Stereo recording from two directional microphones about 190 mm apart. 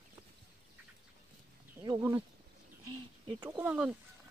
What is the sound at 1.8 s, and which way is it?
Speech, 15° right (ahead or behind).